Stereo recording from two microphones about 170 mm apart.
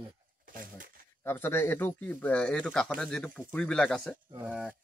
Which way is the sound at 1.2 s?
15° left (ahead or behind).